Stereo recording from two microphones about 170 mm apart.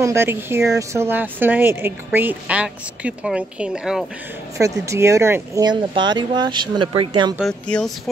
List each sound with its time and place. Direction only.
0.0 s a woman's voice: 15° right (ahead or behind)
4.6 s speech: 20° right (ahead or behind)
7.3 s speech: 5° left (ahead or behind)